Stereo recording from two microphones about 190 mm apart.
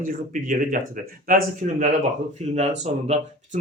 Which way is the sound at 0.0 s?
45° right (ahead or behind).